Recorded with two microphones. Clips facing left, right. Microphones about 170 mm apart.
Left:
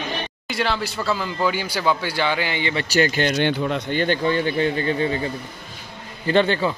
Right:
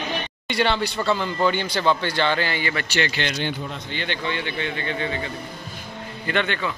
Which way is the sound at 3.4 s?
75° left (ahead or behind).